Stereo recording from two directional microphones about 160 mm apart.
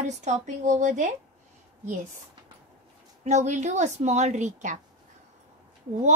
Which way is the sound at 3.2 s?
45° right (ahead or behind).